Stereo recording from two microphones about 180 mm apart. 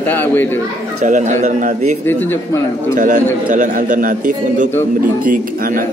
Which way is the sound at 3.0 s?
45° right (ahead or behind).